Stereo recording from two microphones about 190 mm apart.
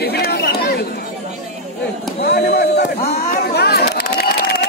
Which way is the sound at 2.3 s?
60° left (ahead or behind).